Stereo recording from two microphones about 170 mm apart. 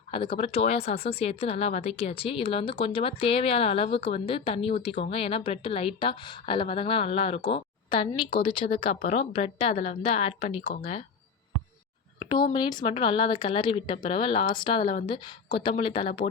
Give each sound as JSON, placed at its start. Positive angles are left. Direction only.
{"t": 0.1, "sound": "speech", "side_deg": 30}
{"t": 12.2, "sound": "a sound", "side_deg": 25}
{"t": 12.5, "sound": "speech", "side_deg": 25}